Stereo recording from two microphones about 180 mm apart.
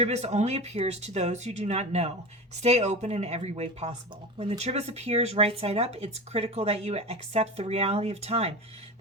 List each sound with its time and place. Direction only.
0.0 s speech: 40° right (ahead or behind)